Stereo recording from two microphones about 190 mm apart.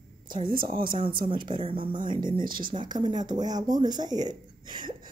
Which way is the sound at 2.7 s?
25° right (ahead or behind).